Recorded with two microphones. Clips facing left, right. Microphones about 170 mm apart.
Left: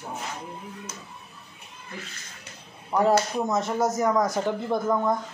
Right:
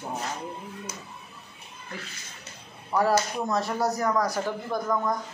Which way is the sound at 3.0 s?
20° left (ahead or behind).